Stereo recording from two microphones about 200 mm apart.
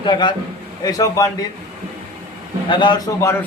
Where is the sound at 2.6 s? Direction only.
25° left (ahead or behind).